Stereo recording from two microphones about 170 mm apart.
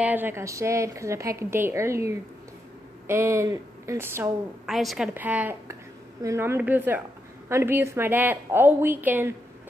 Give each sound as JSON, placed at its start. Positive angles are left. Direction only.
{"t": 0.0, "sound": "a woman's voice", "side_deg": -10}
{"t": 4.6, "sound": "a woman's voice", "side_deg": 0}